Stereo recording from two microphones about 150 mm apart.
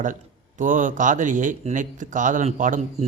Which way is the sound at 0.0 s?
60° right (ahead or behind).